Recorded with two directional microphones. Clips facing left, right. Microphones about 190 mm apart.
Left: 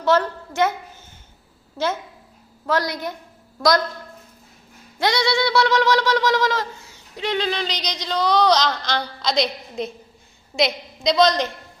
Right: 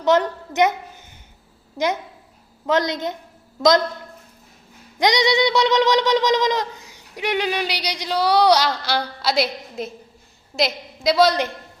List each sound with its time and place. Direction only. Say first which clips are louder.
0.0 s a woman's voice: right 1 dB; 20° right (ahead or behind)
2.6 s a woman's voice: right 3 dB; 20° right (ahead or behind)
4.9 s a sound: right 3 dB; 20° right (ahead or behind)